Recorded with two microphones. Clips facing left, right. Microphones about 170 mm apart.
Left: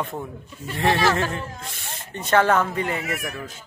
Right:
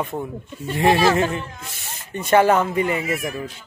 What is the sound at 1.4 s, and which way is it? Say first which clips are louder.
Speech: left 1 dB; 35° left (ahead or behind).